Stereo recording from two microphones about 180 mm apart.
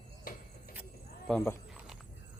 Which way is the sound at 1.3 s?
15° left (ahead or behind).